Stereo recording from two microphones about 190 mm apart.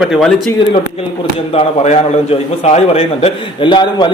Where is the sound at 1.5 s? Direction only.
30° left (ahead or behind).